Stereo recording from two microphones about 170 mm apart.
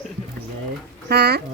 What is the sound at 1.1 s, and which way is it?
Speech, 70° right (ahead or behind).